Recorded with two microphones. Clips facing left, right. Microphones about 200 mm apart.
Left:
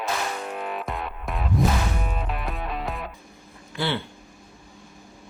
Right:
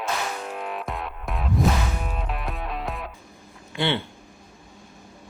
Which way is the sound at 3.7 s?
25° right (ahead or behind).